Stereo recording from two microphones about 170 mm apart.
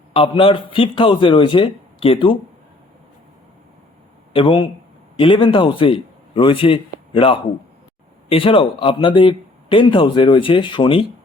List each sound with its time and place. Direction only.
0.1 s a man's voice: 30° left (ahead or behind)
4.3 s a man's voice: 30° left (ahead or behind)